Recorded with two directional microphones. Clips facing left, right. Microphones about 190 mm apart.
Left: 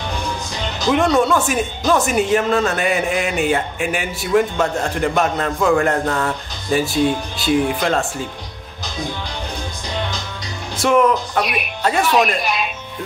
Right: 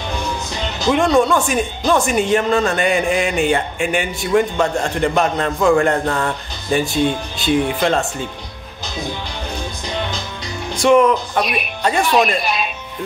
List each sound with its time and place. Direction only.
0.8 s speech: centre (ahead or behind)
10.8 s speech: 5° left (ahead or behind)